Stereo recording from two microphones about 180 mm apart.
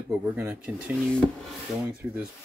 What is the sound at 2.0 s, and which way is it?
Speech, 10° right (ahead or behind).